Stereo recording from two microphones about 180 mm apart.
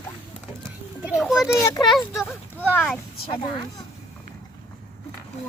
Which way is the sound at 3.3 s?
25° left (ahead or behind).